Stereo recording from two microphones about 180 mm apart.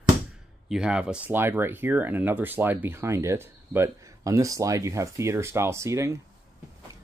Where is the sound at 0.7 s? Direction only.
5° right (ahead or behind).